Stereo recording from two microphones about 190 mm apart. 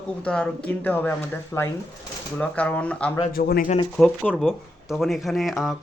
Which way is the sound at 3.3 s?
50° left (ahead or behind).